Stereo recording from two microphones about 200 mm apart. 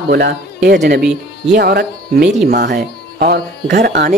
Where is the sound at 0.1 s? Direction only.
50° right (ahead or behind).